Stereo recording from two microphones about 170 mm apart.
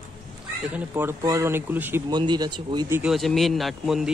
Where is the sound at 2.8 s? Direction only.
15° right (ahead or behind).